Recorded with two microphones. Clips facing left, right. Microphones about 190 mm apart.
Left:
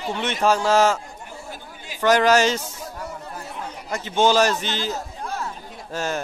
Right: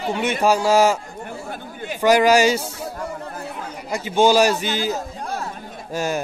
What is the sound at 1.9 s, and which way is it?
Speech, 10° right (ahead or behind).